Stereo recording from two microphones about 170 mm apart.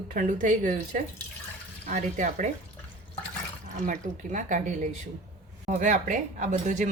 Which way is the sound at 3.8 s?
50° right (ahead or behind).